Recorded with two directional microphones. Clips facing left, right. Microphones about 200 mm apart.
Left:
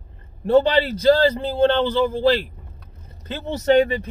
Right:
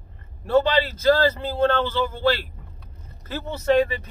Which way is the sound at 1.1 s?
30° left (ahead or behind).